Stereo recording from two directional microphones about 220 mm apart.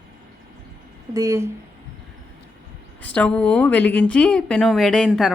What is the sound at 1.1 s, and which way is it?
Speech, 15° right (ahead or behind).